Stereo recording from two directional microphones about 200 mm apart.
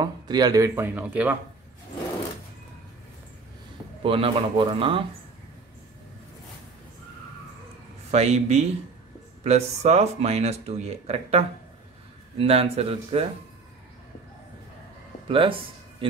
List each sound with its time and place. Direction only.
0.0 s speech: 20° right (ahead or behind)
4.0 s speech: 25° right (ahead or behind)
8.1 s speech: 35° right (ahead or behind)
15.2 s speech: 25° right (ahead or behind)